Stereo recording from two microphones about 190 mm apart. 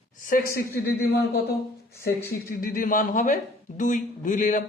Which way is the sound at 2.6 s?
45° left (ahead or behind).